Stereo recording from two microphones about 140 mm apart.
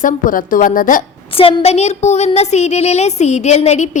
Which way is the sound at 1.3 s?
45° left (ahead or behind).